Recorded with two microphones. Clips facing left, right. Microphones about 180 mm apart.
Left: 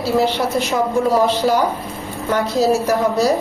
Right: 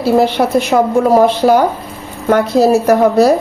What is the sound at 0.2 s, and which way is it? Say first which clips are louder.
A woman's voice: right 6 dB; 55° right (ahead or behind).